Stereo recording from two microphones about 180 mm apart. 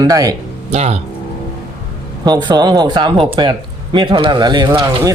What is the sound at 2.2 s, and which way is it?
Speech, 25° right (ahead or behind).